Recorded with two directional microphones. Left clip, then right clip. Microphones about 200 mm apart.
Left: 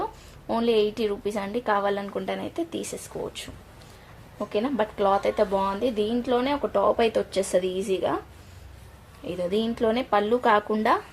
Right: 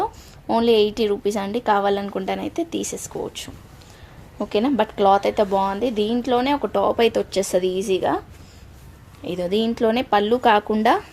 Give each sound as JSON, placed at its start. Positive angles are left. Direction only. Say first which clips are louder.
{"t": 0.0, "sound": "a woman's voice", "louder": "right 6 dB", "side_deg": -45}
{"t": 9.2, "sound": "speech", "louder": "right 4 dB", "side_deg": -30}